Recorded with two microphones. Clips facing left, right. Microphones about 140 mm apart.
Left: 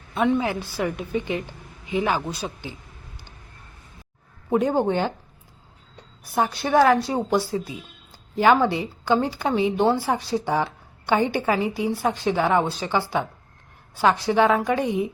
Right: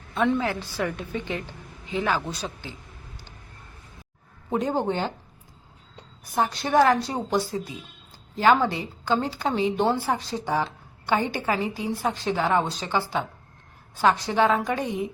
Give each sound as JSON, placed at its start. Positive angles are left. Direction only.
{"t": 0.1, "sound": "a woman's voice", "side_deg": 10}
{"t": 4.4, "sound": "a woman's voice", "side_deg": 10}
{"t": 6.2, "sound": "a woman's voice", "side_deg": 5}